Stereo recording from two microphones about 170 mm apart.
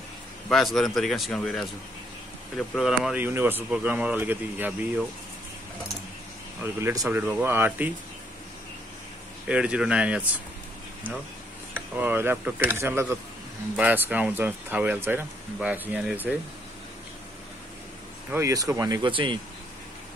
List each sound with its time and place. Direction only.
0.5 s speech: centre (ahead or behind)
6.6 s speech: 15° right (ahead or behind)
9.5 s speech: 5° right (ahead or behind)
11.7 s speech: 10° right (ahead or behind)
18.3 s speech: 20° right (ahead or behind)